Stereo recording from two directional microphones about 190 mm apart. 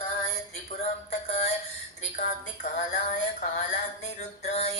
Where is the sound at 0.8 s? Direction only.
35° left (ahead or behind).